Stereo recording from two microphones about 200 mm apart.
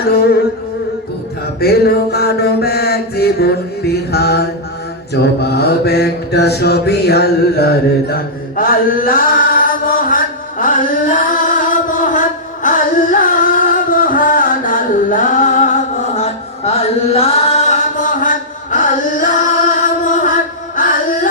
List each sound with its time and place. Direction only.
0.1 s mantra: 50° left (ahead or behind)
1.6 s mantra: 50° left (ahead or behind)
10.6 s music: 40° left (ahead or behind)